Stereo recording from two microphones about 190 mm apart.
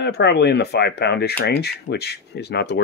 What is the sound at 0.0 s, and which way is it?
Speech, 60° left (ahead or behind).